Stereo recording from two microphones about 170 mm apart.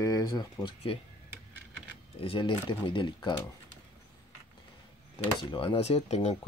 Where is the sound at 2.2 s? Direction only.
30° left (ahead or behind).